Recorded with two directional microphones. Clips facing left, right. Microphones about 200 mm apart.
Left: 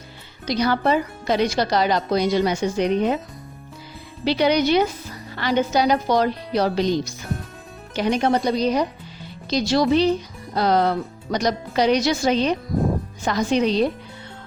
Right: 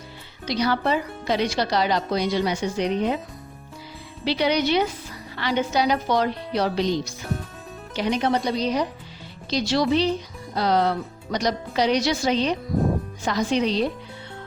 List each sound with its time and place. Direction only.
0.4 s speech: 45° left (ahead or behind)
4.3 s speech: 45° left (ahead or behind)